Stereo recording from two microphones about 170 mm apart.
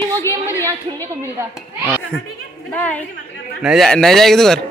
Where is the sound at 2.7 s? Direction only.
10° left (ahead or behind).